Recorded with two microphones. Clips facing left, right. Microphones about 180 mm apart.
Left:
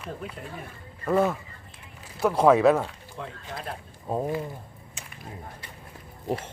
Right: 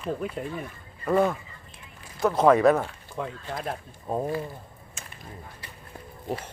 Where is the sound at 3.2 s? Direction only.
45° right (ahead or behind).